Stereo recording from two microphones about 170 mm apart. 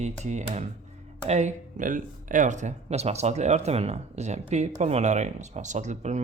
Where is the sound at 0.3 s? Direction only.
40° right (ahead or behind).